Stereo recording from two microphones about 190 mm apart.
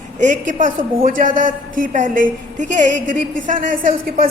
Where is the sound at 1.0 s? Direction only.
45° right (ahead or behind).